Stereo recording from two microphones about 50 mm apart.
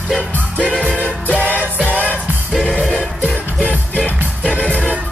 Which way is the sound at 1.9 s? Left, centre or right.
Left.